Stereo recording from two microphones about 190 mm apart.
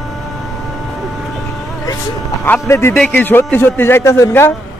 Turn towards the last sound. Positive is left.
turn(degrees=15)  # may be behind; listen again after turning